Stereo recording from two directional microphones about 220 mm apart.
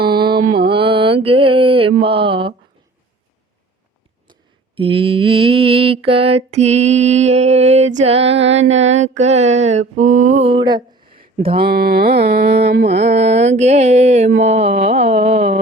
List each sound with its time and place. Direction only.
0.0 s mantra: 45° right (ahead or behind)
0.7 s mantra: 25° right (ahead or behind)
4.3 s mantra: 25° right (ahead or behind)
9.9 s a sound: 35° right (ahead or behind)
11.6 s mantra: 45° right (ahead or behind)
13.0 s mantra: 30° right (ahead or behind)
14.4 s a sound: 30° right (ahead or behind)